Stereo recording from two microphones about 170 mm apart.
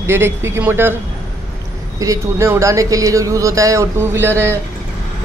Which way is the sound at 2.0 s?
15° right (ahead or behind).